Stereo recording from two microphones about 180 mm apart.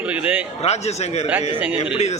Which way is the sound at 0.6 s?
35° left (ahead or behind).